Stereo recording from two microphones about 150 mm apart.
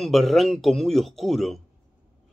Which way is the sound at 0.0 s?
Centre (ahead or behind).